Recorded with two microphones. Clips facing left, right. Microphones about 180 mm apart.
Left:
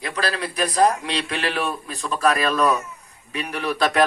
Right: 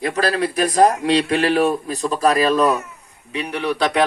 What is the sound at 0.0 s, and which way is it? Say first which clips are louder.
A man's voice: right 6 dB; 45° right (ahead or behind).